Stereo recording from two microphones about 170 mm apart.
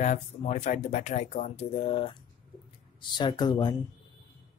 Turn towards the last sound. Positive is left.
turn(degrees=25)  # may be behind; listen again after turning